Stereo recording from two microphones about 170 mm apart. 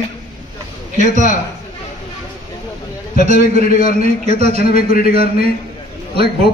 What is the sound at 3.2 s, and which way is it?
Speech, 40° right (ahead or behind).